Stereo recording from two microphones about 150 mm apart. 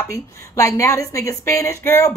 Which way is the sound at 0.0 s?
20° left (ahead or behind).